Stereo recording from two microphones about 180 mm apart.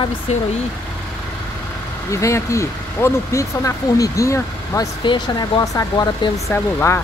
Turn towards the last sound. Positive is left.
turn(degrees=15)  # may be behind; listen again after turning